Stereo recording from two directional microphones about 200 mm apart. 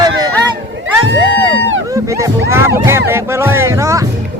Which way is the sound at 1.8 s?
15° right (ahead or behind).